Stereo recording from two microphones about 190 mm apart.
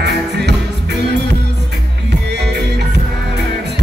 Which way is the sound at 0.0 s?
60° right (ahead or behind).